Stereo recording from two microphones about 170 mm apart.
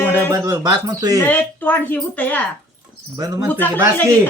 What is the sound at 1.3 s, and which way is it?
A woman's voice, 10° left (ahead or behind).